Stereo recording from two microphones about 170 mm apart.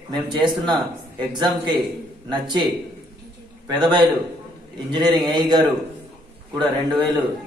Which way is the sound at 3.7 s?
25° right (ahead or behind).